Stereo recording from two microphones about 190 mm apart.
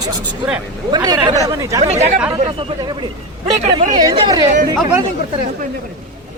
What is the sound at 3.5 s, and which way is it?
Speech, 40° right (ahead or behind).